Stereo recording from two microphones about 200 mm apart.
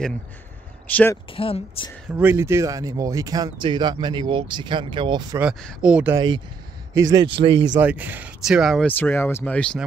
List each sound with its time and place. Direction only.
0.8 s speech: 10° left (ahead or behind)
1.3 s speech: 25° left (ahead or behind)
2.1 s speech: 10° right (ahead or behind)
5.4 s speech: centre (ahead or behind)
6.1 s speech: 20° right (ahead or behind)
7.8 s speech: 10° right (ahead or behind)